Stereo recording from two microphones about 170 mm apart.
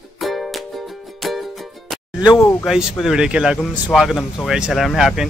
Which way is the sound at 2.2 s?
15° left (ahead or behind).